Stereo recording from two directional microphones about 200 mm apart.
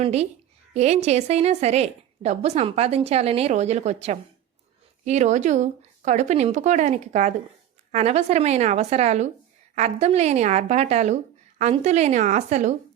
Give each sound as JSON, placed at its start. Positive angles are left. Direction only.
{"t": 0.0, "sound": "a woman's voice", "side_deg": -35}